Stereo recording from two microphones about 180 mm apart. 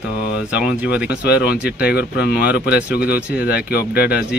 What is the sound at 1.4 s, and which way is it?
Speech, 60° left (ahead or behind).